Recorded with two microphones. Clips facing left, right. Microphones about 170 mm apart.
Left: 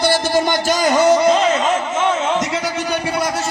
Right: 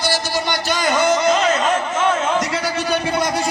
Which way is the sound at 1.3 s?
25° left (ahead or behind).